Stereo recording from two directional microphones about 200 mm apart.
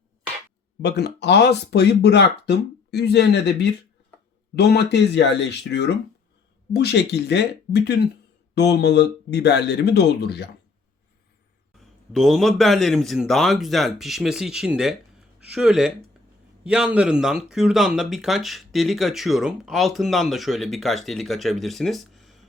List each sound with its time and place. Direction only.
0.8 s speech: 55° left (ahead or behind)
11.8 s speech: centre (ahead or behind)